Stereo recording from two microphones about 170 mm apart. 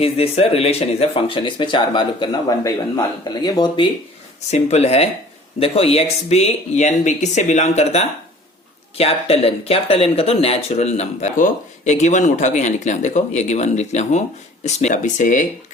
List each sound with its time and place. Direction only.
0.0 s speech: 35° left (ahead or behind)
4.5 s speech: 40° left (ahead or behind)